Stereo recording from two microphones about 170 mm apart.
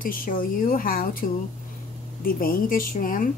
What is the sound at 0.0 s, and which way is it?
A woman's voice, 55° left (ahead or behind).